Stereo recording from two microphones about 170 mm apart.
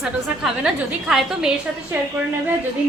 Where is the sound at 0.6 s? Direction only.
5° right (ahead or behind).